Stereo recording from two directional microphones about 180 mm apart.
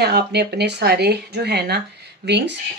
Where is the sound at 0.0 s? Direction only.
65° right (ahead or behind).